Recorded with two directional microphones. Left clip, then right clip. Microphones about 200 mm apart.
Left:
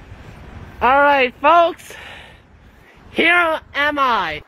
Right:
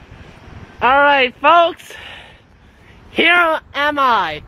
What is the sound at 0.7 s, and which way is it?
Speech, 5° left (ahead or behind).